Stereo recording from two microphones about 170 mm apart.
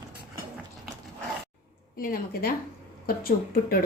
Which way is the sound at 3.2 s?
60° left (ahead or behind).